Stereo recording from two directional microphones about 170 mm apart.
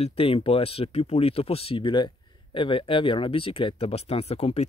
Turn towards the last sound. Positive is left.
turn(degrees=35)  # may be behind; listen again after turning